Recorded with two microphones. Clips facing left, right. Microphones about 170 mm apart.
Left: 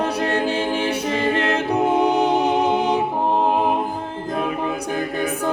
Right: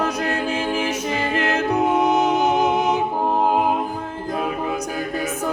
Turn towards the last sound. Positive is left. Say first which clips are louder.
# left 1 dB
turn(degrees=35)  # may be behind; listen again after turning